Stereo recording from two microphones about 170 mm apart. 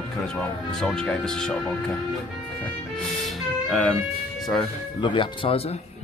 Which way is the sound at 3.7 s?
Centre (ahead or behind).